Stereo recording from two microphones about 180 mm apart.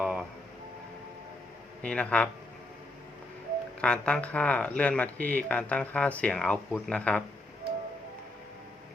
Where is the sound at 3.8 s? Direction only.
5° left (ahead or behind).